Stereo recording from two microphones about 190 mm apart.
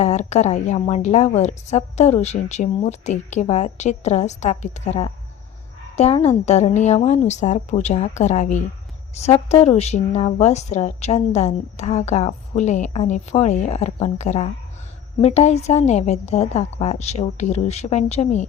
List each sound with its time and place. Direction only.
0.0 s a woman's voice: 35° left (ahead or behind)